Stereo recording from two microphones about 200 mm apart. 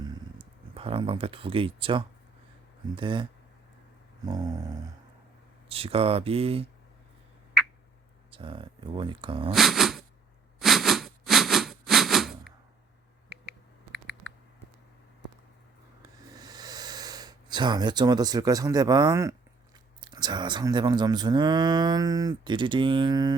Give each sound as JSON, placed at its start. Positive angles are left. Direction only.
{"t": 0.7, "sound": "speech", "side_deg": -30}
{"t": 4.3, "sound": "speech", "side_deg": -20}
{"t": 5.6, "sound": "speech", "side_deg": -30}
{"t": 8.3, "sound": "speech", "side_deg": -25}
{"t": 9.5, "sound": "dog", "side_deg": 0}
{"t": 10.6, "sound": "a sound", "side_deg": 0}
{"t": 16.3, "sound": "a sound", "side_deg": -20}
{"t": 20.0, "sound": "speech", "side_deg": -20}